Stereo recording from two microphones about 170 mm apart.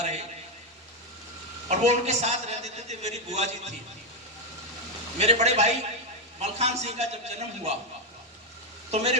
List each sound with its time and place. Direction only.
0.0 s a man's voice: 40° right (ahead or behind)
1.6 s a man's voice: 40° right (ahead or behind)
5.1 s a man's voice: 40° right (ahead or behind)
8.9 s speech: 40° right (ahead or behind)